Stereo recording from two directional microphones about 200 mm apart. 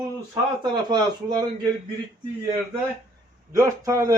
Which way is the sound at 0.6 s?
20° right (ahead or behind).